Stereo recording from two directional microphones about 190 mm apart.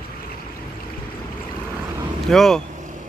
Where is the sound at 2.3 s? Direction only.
Centre (ahead or behind).